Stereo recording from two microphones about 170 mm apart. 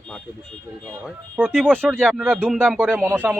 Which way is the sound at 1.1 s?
5° right (ahead or behind).